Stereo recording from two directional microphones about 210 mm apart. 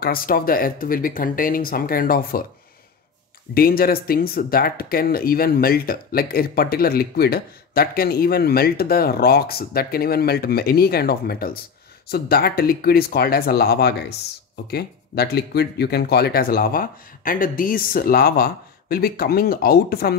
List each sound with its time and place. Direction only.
0.0 s speech: 45° left (ahead or behind)
3.5 s speech: 45° left (ahead or behind)